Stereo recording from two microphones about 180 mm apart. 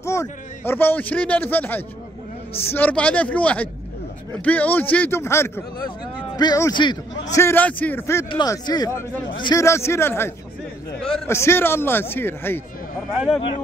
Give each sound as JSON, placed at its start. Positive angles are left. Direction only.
{"t": 0.0, "sound": "a man's voice", "side_deg": 15}
{"t": 7.3, "sound": "a man's voice", "side_deg": 10}
{"t": 8.3, "sound": "a man's voice", "side_deg": 25}